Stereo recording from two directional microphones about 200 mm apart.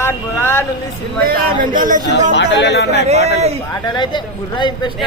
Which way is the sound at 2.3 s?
60° left (ahead or behind).